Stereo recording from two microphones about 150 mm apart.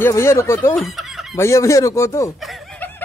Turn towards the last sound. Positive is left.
turn(degrees=15)  # may be behind; listen again after turning